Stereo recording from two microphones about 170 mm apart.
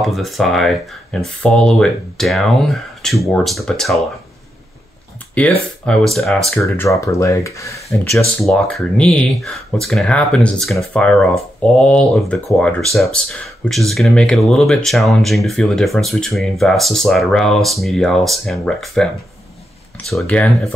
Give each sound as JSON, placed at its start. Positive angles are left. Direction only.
{"t": 0.0, "sound": "speech", "side_deg": 0}
{"t": 5.9, "sound": "speech", "side_deg": 0}
{"t": 6.6, "sound": "speech", "side_deg": 20}
{"t": 8.4, "sound": "speech", "side_deg": 0}
{"t": 20.1, "sound": "speech", "side_deg": 5}